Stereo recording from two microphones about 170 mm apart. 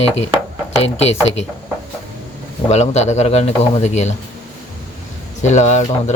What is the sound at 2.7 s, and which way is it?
Speech, 40° left (ahead or behind).